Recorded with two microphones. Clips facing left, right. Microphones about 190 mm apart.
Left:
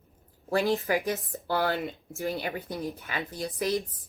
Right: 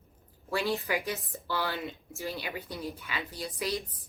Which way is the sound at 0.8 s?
45° left (ahead or behind).